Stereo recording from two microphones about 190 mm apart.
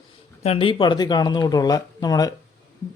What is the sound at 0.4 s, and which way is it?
Speech, 30° left (ahead or behind).